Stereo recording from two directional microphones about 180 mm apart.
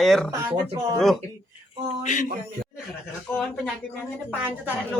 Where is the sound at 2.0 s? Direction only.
45° left (ahead or behind).